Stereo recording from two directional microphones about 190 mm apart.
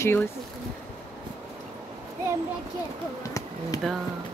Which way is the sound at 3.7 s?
20° left (ahead or behind).